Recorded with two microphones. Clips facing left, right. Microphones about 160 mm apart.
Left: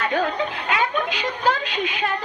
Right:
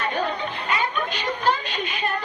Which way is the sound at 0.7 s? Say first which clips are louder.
Left 1 dB; 90° left.